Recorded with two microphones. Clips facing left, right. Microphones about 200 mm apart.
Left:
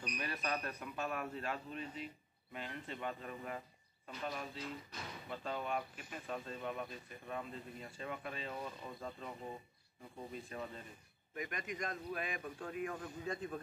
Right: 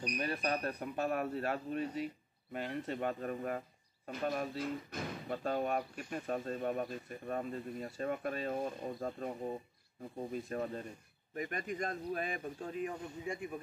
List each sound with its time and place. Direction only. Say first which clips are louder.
0.0 s speech: right 6 dB; 35° right (ahead or behind)
10.3 s speech: right 8 dB; 50° right (ahead or behind)
11.3 s speech: right 5 dB; 35° right (ahead or behind); by 13.6 s 10° right (ahead or behind)